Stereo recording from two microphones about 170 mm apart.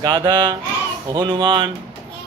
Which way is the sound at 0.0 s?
25° right (ahead or behind).